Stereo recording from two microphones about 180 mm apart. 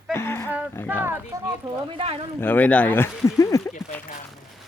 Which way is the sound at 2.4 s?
10° left (ahead or behind).